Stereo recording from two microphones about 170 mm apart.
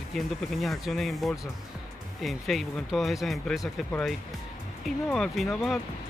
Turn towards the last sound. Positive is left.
turn(degrees=0)  # may be behind; listen again after turning